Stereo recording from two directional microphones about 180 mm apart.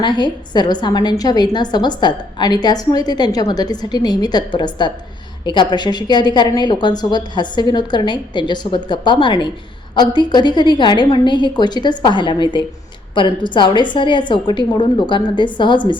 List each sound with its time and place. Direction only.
0.0 s a woman's voice: 25° left (ahead or behind)